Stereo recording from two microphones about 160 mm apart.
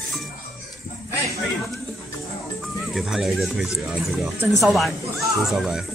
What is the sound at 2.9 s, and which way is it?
Speech, centre (ahead or behind).